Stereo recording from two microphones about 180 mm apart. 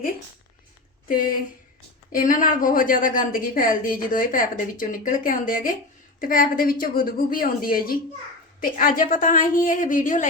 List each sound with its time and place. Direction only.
1.0 s a woman's voice: 50° left (ahead or behind)